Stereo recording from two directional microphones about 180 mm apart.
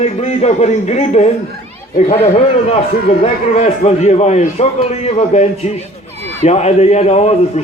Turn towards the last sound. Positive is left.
turn(degrees=35)  # may be behind; listen again after turning